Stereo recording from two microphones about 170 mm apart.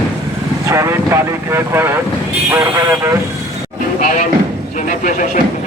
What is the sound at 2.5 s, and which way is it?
Speech, 15° right (ahead or behind).